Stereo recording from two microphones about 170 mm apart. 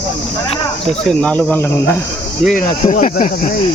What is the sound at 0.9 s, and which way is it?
Speech, 5° left (ahead or behind).